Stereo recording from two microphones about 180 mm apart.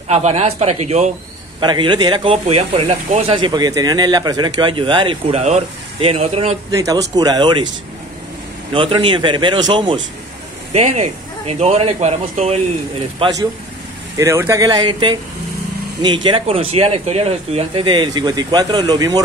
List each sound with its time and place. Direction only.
0.1 s speech: 40° right (ahead or behind)
1.6 s speech: 25° right (ahead or behind)
6.7 s speech: 20° right (ahead or behind)
8.7 s speech: 30° right (ahead or behind)
10.7 s speech: 35° right (ahead or behind)
13.2 s speech: 20° right (ahead or behind)